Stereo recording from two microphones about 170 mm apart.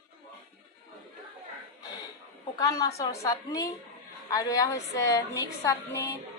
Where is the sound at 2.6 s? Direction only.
20° left (ahead or behind).